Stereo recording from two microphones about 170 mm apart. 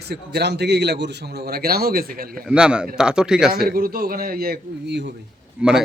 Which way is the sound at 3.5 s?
60° right (ahead or behind).